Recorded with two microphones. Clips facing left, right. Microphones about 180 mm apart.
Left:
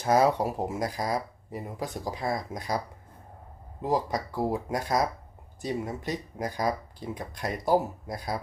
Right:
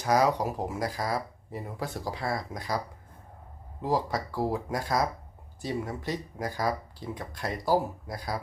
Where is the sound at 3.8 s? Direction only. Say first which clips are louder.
Left 1 dB; 20° left (ahead or behind).